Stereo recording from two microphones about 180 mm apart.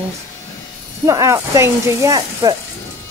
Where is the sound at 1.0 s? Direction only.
15° right (ahead or behind).